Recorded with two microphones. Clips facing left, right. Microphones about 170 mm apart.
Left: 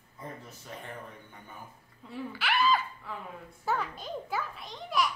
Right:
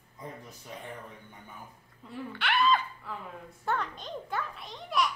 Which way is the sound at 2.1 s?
5° left (ahead or behind).